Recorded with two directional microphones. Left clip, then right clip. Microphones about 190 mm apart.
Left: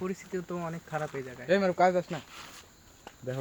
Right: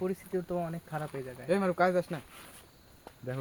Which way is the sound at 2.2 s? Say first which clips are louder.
Left 4 dB; 40° left (ahead or behind).